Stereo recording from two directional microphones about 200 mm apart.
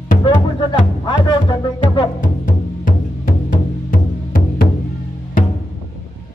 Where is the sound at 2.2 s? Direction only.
40° left (ahead or behind).